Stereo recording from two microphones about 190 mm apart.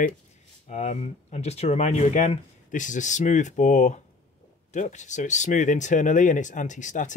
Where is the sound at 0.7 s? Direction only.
35° left (ahead or behind).